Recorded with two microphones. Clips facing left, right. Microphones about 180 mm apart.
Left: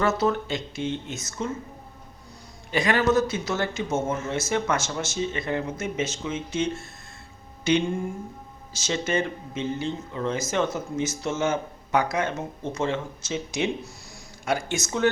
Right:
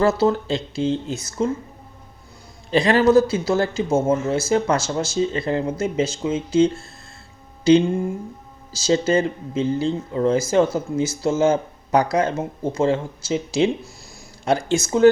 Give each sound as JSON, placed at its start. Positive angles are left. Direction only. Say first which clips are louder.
{"t": 0.0, "sound": "speech", "louder": "right 5 dB", "side_deg": -30}
{"t": 2.6, "sound": "speech", "louder": "right 6 dB", "side_deg": -30}
{"t": 8.7, "sound": "speech", "louder": "right 8 dB", "side_deg": -30}